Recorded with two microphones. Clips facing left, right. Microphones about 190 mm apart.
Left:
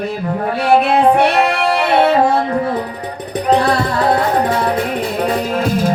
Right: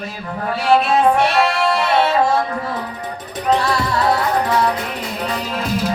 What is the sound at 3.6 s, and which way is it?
Music, 55° left (ahead or behind).